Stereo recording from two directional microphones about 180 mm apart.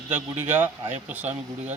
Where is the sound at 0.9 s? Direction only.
40° right (ahead or behind).